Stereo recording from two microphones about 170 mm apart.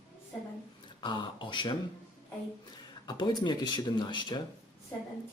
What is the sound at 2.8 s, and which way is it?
Speech, 25° left (ahead or behind).